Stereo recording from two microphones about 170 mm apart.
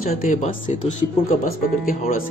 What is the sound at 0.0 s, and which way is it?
Speech, 50° left (ahead or behind).